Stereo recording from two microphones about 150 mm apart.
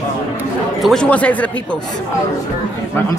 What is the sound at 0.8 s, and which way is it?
Speech, 5° left (ahead or behind).